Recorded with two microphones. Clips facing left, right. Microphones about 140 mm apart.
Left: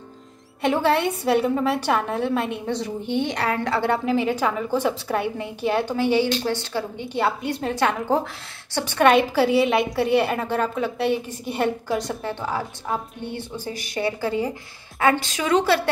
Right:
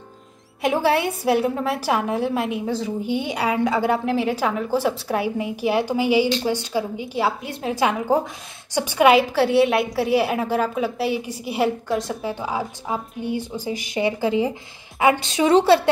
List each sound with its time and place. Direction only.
0.6 s a woman's voice: 10° right (ahead or behind); by 15.9 s 25° right (ahead or behind)